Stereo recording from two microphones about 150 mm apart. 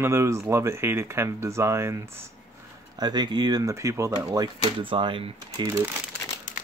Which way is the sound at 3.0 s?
30° right (ahead or behind).